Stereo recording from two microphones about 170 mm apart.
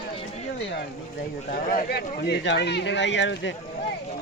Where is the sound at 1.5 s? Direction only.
55° left (ahead or behind); by 3.6 s 90° left.